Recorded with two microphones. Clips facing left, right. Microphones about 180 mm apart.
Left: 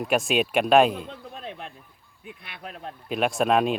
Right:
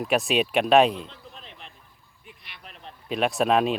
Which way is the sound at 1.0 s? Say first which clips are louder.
Left 8 dB; 55° left (ahead or behind).